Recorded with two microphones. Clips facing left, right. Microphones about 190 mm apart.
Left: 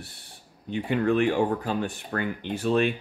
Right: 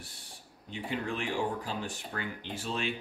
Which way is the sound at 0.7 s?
60° left (ahead or behind).